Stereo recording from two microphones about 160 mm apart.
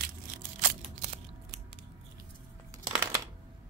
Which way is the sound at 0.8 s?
45° right (ahead or behind).